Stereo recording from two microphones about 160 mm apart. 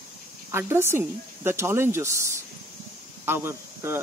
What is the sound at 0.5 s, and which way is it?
Speech, 15° right (ahead or behind).